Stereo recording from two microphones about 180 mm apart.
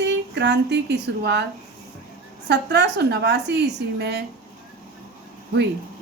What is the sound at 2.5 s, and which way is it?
A woman's voice, 70° right (ahead or behind).